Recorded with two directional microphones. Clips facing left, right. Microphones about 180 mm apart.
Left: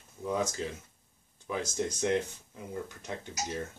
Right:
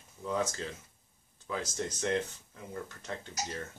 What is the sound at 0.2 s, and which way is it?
Speech, 15° left (ahead or behind).